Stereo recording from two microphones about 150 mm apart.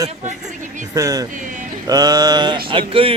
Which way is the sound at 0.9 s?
25° right (ahead or behind).